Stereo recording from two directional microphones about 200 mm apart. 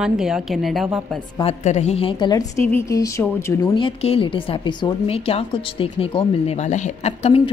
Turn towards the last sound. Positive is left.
turn(degrees=30)  # may be behind; listen again after turning